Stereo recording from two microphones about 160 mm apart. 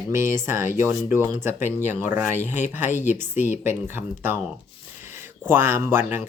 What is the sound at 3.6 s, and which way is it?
Speech, 15° right (ahead or behind).